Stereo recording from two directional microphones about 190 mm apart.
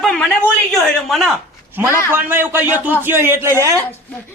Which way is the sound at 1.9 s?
15° left (ahead or behind).